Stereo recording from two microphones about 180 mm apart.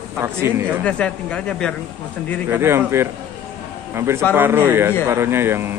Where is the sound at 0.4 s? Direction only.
15° right (ahead or behind).